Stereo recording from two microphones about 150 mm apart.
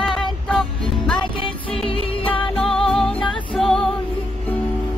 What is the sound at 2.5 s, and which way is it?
Music, centre (ahead or behind).